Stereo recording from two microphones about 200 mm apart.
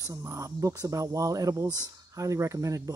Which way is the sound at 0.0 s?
15° right (ahead or behind).